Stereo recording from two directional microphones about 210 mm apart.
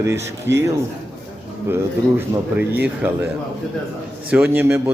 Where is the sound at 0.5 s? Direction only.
55° right (ahead or behind).